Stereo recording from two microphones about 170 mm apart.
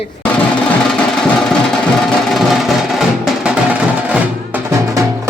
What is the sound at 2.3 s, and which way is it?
Music, centre (ahead or behind).